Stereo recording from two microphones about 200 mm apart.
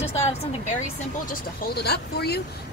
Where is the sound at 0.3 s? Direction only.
30° left (ahead or behind).